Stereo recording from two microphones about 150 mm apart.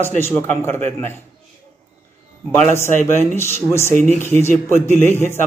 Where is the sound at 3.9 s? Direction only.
55° right (ahead or behind).